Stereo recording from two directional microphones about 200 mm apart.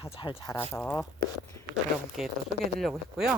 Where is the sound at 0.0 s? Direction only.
25° left (ahead or behind).